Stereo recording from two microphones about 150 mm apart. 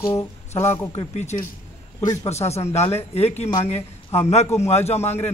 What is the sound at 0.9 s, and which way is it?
Speech, 50° left (ahead or behind).